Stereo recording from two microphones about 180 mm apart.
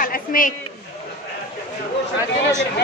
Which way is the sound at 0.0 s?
50° left (ahead or behind).